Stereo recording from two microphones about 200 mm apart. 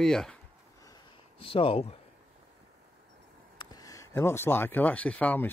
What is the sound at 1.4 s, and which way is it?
Speech, 25° left (ahead or behind).